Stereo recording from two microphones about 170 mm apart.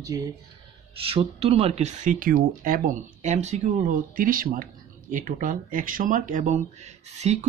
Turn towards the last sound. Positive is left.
turn(degrees=-40)  # may be behind; listen again after turning